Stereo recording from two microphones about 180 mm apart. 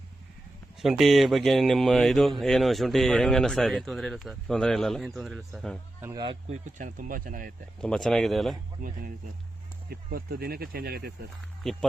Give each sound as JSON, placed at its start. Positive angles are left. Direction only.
{"t": 0.8, "sound": "speech", "side_deg": 0}
{"t": 6.0, "sound": "speech", "side_deg": -15}
{"t": 6.5, "sound": "speech", "side_deg": -45}
{"t": 7.8, "sound": "speech", "side_deg": 5}
{"t": 9.9, "sound": "speech", "side_deg": -55}
{"t": 11.6, "sound": "speech", "side_deg": 0}